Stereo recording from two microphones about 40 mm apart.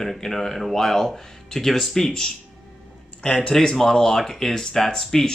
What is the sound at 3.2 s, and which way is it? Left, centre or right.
Speech, left.